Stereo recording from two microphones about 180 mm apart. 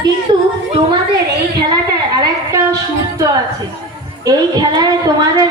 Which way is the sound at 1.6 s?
25° right (ahead or behind).